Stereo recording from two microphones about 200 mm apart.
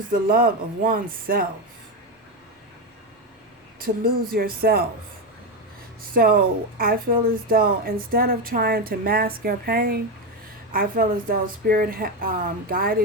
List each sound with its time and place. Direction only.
0.1 s speech: 45° right (ahead or behind)
3.8 s speech: 45° right (ahead or behind)
6.0 s speech: 45° right (ahead or behind)